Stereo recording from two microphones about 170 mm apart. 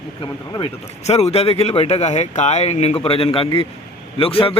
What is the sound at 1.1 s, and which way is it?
Speech, 40° left (ahead or behind).